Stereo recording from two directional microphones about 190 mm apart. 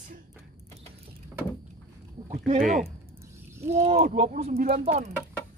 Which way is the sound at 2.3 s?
45° right (ahead or behind).